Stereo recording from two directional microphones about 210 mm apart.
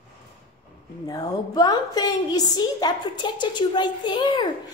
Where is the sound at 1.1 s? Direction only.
15° left (ahead or behind).